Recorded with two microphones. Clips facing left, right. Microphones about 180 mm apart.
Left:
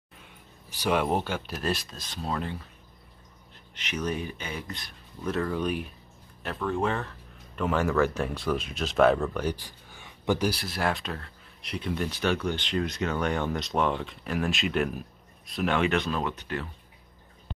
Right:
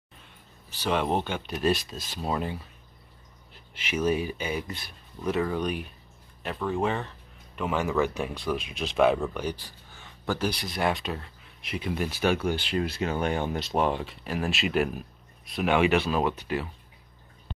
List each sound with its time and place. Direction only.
0.7 s speech: 10° left (ahead or behind); by 2.6 s 10° right (ahead or behind)
3.7 s speech: 10° right (ahead or behind)
9.6 s a sound: 15° left (ahead or behind)
10.5 s speech: centre (ahead or behind)
13.0 s speech: 25° right (ahead or behind)
14.5 s speech: 5° right (ahead or behind)